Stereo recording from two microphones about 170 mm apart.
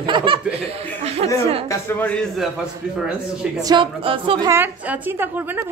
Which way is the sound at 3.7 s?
30° right (ahead or behind).